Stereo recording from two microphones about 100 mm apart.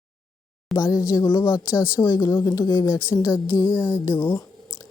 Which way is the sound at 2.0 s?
50° left (ahead or behind).